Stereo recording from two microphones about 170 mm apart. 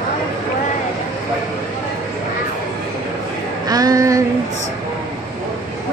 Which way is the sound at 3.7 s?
20° right (ahead or behind).